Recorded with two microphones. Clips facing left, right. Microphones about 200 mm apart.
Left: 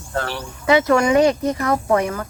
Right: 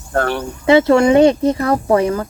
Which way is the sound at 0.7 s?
30° right (ahead or behind).